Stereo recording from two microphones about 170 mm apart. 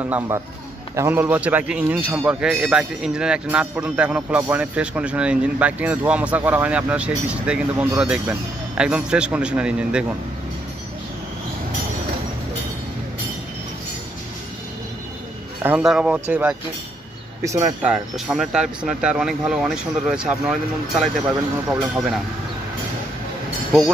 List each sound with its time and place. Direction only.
0.9 s a man's voice: 10° right (ahead or behind)
15.6 s a man's voice: 5° right (ahead or behind)
17.8 s speech: centre (ahead or behind)